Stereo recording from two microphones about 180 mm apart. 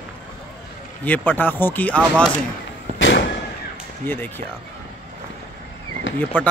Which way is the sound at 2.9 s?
90° left.